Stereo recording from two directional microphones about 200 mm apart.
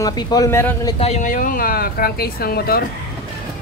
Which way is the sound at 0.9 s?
35° left (ahead or behind).